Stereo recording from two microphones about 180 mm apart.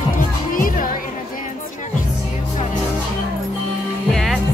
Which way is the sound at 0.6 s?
50° left (ahead or behind).